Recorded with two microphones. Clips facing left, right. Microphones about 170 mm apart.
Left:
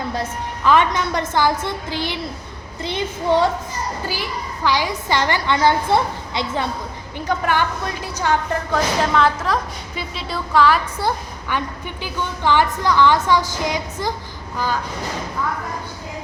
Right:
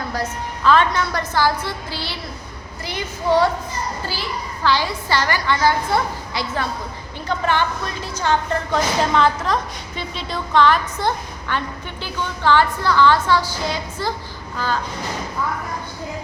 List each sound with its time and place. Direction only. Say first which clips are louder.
0.1 s a child's voice: even; 20° left (ahead or behind)
7.3 s a woman's voice: even; 10° left (ahead or behind)